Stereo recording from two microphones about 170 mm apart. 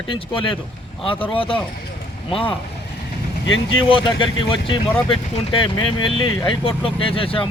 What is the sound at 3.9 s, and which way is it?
Speech, 30° left (ahead or behind).